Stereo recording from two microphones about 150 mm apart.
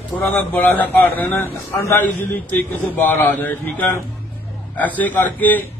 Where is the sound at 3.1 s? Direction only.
15° left (ahead or behind).